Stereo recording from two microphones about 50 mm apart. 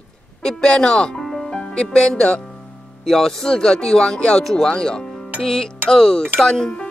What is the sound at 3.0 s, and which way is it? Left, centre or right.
Speech, centre.